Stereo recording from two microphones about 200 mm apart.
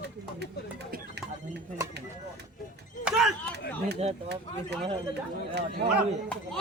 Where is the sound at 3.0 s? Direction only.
Centre (ahead or behind).